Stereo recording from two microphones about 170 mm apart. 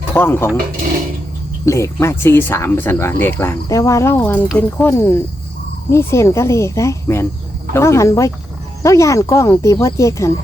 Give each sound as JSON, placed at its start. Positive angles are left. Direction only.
{"t": 0.1, "sound": "speech", "side_deg": 15}
{"t": 1.6, "sound": "speech", "side_deg": 15}